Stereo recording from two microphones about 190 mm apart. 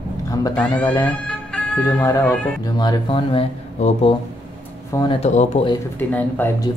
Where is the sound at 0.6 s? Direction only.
5° left (ahead or behind); by 4.1 s 30° left (ahead or behind).